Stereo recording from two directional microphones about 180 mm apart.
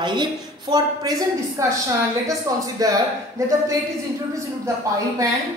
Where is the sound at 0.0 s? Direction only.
25° right (ahead or behind).